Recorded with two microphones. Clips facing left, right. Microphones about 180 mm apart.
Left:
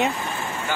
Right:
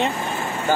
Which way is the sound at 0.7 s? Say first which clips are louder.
Right 8 dB; 40° right (ahead or behind).